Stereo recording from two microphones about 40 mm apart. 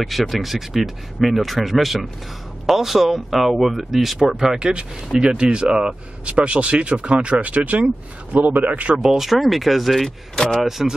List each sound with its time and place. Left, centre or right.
0.0 s speech: centre
4.6 s speech: right
6.2 s a man's voice: right
8.9 s speech: centre
9.3 s speech: centre
10.0 s speech: centre
10.6 s speech: centre